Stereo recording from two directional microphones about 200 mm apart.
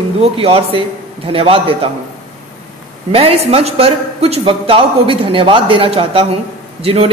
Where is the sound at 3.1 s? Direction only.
30° right (ahead or behind).